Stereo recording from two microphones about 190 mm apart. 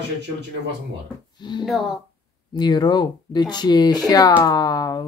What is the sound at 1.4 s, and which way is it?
Speech, 25° left (ahead or behind).